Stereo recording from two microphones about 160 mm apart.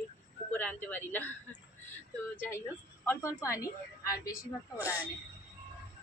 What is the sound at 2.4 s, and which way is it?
Speech, 15° left (ahead or behind).